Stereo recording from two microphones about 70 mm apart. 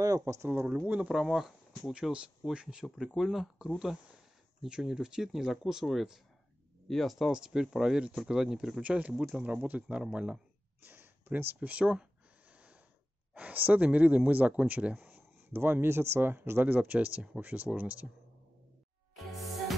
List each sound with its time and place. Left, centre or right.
0.0 s speech: right
0.5 s speech: right
1.1 s speech: centre
10.9 s speech: right
13.3 s speech: centre